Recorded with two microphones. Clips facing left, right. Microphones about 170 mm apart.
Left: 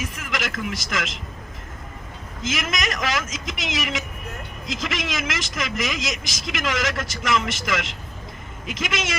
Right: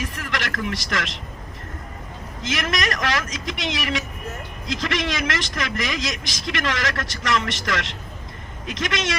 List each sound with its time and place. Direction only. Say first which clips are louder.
0.0 s a man's voice: right 1 dB; centre (ahead or behind)
2.4 s a man's voice: right 2 dB; centre (ahead or behind)